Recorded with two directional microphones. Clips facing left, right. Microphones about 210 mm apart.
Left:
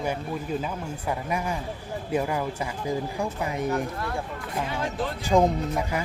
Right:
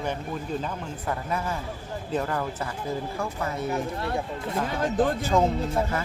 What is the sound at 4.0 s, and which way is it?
Speech, 25° right (ahead or behind).